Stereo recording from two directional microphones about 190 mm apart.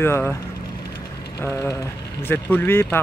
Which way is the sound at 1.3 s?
15° left (ahead or behind).